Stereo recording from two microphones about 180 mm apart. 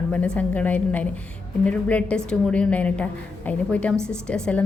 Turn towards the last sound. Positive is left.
turn(degrees=5)  # may be behind; listen again after turning